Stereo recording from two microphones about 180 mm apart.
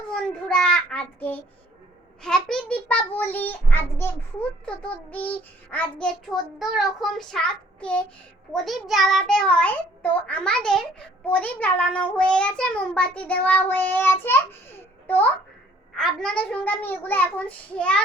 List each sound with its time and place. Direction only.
0.1 s a child's voice: 5° left (ahead or behind)